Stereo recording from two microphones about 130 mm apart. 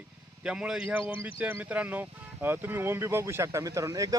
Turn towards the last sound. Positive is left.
turn(degrees=-25)  # may be behind; listen again after turning